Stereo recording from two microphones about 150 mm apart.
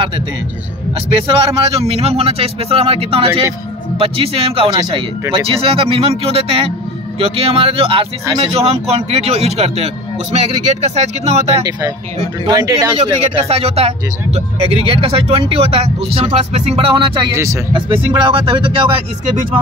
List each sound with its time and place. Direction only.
1.2 s speech: 40° right (ahead or behind)
4.6 s speech: 25° right (ahead or behind)
5.3 s speech: 40° right (ahead or behind)
12.4 s speech: 25° right (ahead or behind)
13.0 s speech: 40° right (ahead or behind)
17.3 s speech: 20° right (ahead or behind)
17.7 s speech: 35° right (ahead or behind)